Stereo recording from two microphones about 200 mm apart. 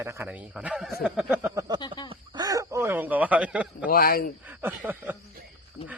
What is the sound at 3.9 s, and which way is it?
Speech, 45° left (ahead or behind).